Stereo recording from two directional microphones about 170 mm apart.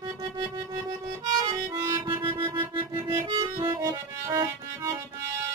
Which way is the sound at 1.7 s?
25° right (ahead or behind).